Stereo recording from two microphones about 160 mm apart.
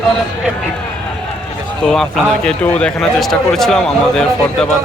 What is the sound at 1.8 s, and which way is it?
A man's voice, centre (ahead or behind).